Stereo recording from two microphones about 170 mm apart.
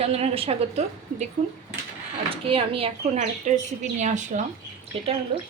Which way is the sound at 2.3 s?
35° right (ahead or behind).